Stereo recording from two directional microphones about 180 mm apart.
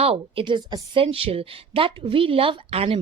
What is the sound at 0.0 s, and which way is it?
A woman's voice, 30° right (ahead or behind).